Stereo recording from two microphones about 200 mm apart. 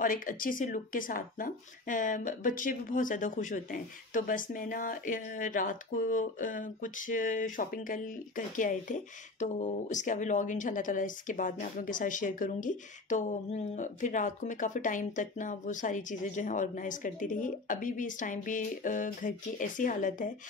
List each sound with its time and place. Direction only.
0.0 s speech: 40° left (ahead or behind)